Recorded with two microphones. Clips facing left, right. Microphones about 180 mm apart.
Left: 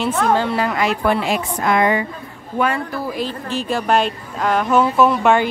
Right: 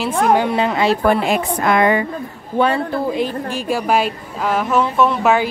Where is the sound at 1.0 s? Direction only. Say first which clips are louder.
Right 3 dB; 50° right (ahead or behind).